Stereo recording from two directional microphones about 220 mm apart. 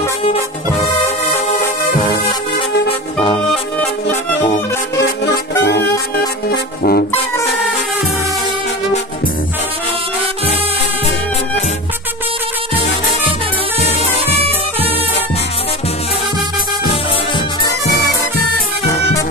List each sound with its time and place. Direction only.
1.5 s music: 30° left (ahead or behind)
5.6 s saxophone: 50° left (ahead or behind)
6.5 s brass instrument: 45° left (ahead or behind)
13.7 s music: 30° left (ahead or behind)
14.3 s music: 25° right (ahead or behind)
17.6 s music: 15° left (ahead or behind)